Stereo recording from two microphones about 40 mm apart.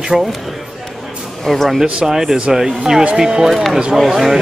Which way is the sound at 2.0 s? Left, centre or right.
Centre.